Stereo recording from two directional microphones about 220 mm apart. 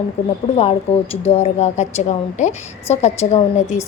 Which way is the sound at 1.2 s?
30° left (ahead or behind).